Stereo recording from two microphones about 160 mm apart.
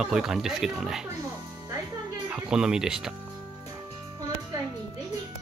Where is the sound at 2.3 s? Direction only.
5° right (ahead or behind).